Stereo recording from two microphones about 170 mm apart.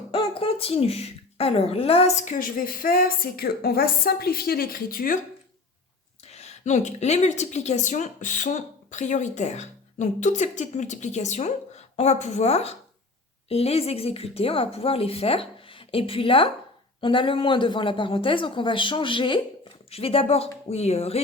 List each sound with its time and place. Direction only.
0.1 s speech: 30° left (ahead or behind); by 5.2 s 55° left (ahead or behind)
6.2 s a woman's voice: 40° left (ahead or behind)